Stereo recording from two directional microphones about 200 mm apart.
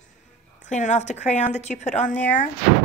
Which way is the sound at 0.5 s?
40° left (ahead or behind).